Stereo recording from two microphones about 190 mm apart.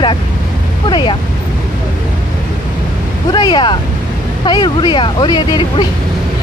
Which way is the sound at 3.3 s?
20° left (ahead or behind).